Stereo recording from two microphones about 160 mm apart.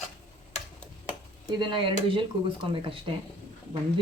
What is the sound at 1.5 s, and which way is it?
Speech, 30° right (ahead or behind).